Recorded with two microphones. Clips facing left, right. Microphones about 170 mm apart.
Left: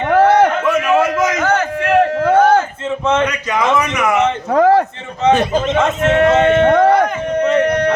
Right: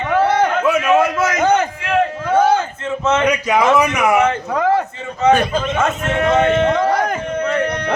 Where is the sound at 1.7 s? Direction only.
75° left (ahead or behind).